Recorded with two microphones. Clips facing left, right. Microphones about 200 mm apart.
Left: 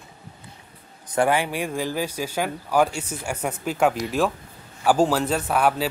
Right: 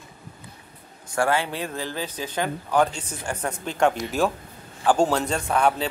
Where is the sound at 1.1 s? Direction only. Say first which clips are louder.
Left 2 dB; 20° left (ahead or behind).